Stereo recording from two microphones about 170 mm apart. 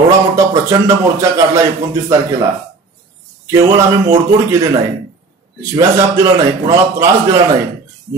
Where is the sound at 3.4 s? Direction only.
20° right (ahead or behind).